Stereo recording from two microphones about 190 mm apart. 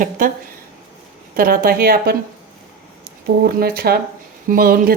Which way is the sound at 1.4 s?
50° right (ahead or behind).